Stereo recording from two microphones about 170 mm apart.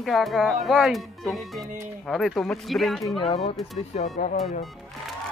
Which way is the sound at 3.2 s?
40° left (ahead or behind).